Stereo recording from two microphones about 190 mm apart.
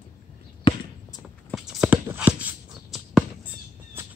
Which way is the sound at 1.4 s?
Centre (ahead or behind).